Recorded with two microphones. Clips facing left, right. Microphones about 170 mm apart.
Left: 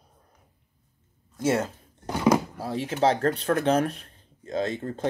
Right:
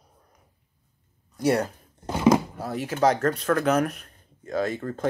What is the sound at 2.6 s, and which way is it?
Speech, 30° left (ahead or behind).